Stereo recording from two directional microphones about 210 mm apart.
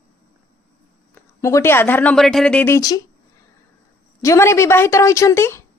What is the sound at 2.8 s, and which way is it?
Speech, 15° left (ahead or behind).